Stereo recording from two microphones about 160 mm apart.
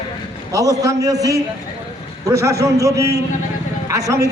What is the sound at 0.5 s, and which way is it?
A man's voice, 20° right (ahead or behind).